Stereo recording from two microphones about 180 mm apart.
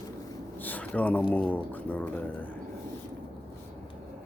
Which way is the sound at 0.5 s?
10° left (ahead or behind).